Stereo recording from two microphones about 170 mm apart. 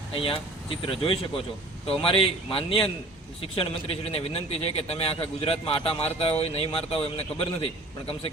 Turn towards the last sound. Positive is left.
turn(degrees=35)  # may be behind; listen again after turning